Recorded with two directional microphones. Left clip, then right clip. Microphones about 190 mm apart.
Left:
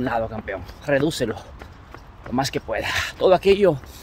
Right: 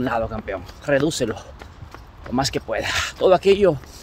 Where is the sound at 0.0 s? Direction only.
10° right (ahead or behind).